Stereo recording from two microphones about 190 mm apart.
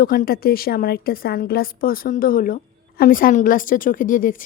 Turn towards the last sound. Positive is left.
turn(degrees=45)  # may be behind; listen again after turning